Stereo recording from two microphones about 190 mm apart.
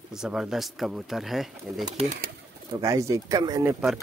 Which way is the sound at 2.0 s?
45° right (ahead or behind).